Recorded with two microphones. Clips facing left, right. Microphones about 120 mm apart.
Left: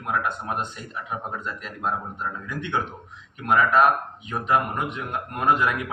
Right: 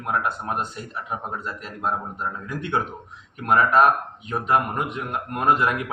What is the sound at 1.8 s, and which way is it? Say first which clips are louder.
Speech: right 1 dB; 35° right (ahead or behind).